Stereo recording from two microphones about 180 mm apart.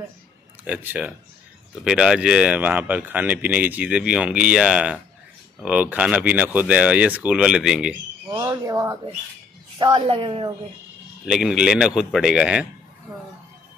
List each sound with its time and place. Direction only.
0.7 s speech: 10° right (ahead or behind)
8.3 s speech: 20° right (ahead or behind)
11.2 s a man's voice: 5° right (ahead or behind)